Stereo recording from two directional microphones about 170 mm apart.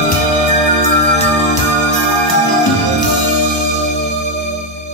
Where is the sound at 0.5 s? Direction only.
45° left (ahead or behind).